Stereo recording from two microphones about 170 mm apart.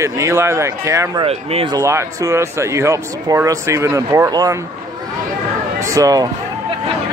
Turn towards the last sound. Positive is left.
turn(degrees=-20)  # may be behind; listen again after turning